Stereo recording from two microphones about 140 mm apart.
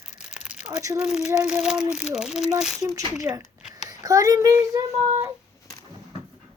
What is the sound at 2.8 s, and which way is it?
A child's voice, 25° right (ahead or behind).